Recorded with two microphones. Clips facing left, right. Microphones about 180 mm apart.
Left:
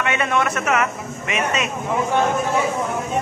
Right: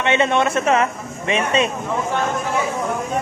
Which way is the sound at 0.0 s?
25° right (ahead or behind).